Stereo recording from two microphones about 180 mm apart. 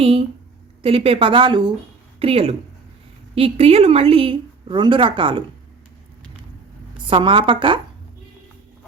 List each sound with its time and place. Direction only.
0.0 s a woman's voice: 30° right (ahead or behind)
7.1 s a woman's voice: 30° right (ahead or behind)